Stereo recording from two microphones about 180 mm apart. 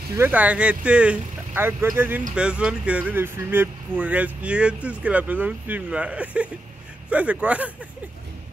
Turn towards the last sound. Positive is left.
turn(degrees=-10)  # may be behind; listen again after turning